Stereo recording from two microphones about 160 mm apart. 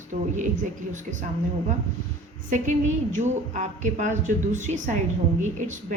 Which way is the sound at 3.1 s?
50° right (ahead or behind).